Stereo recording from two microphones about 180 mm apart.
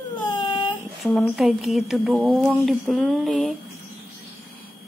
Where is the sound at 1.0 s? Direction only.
Centre (ahead or behind).